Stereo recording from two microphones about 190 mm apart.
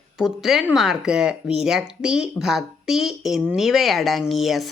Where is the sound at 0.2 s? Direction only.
Centre (ahead or behind).